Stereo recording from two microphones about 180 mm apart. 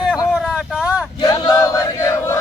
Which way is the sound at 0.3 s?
5° right (ahead or behind).